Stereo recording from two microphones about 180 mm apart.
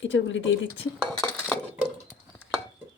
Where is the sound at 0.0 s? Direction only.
90° left.